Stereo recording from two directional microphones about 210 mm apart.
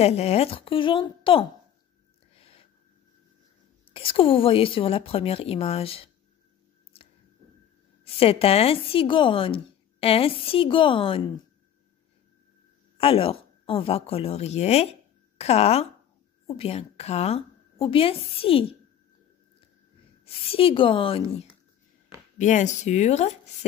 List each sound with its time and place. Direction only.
0.0 s a woman's voice: 30° left (ahead or behind)
2.3 s a sound: 25° left (ahead or behind)
3.9 s a woman's voice: 25° left (ahead or behind)
8.0 s a woman's voice: 25° left (ahead or behind)
12.9 s a woman's voice: 25° left (ahead or behind)
20.2 s a woman's voice: 25° left (ahead or behind)
22.4 s speech: 35° left (ahead or behind)